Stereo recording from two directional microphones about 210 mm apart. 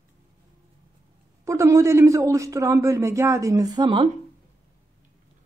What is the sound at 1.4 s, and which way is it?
A man's voice, 15° right (ahead or behind).